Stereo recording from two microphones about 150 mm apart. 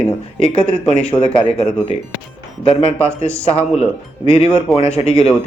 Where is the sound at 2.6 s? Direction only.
40° left (ahead or behind).